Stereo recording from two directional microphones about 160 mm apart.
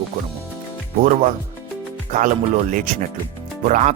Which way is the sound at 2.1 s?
55° right (ahead or behind).